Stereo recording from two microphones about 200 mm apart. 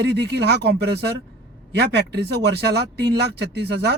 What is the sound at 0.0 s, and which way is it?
A man's voice, 60° right (ahead or behind).